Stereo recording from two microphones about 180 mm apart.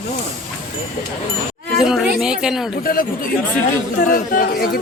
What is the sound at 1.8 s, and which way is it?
Speech, centre (ahead or behind).